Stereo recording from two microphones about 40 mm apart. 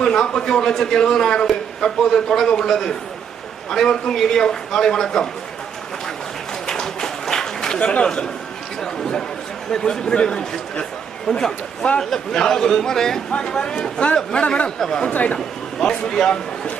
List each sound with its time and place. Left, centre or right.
0.0 s a man's voice: centre
2.2 s a man's voice: centre
6.7 s a sound: centre
7.8 s a man's voice: left
8.8 s a sound: centre
9.7 s a man's voice: centre
13.3 s a man's voice: left
14.8 s a man's voice: centre
15.1 s speech: left
15.8 s a man's voice: centre